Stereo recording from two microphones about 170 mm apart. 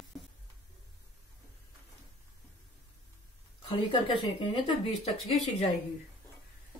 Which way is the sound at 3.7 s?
30° left (ahead or behind).